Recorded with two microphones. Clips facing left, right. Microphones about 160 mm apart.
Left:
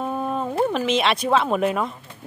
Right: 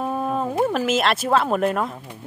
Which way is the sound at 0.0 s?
5° right (ahead or behind).